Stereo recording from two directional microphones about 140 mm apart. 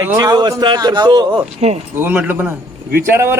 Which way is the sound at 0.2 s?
30° right (ahead or behind).